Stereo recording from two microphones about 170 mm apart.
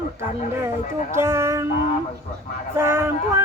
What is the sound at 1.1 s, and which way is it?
Female singing, 15° right (ahead or behind).